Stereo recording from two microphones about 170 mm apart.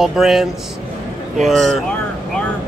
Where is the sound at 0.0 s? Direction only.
Centre (ahead or behind).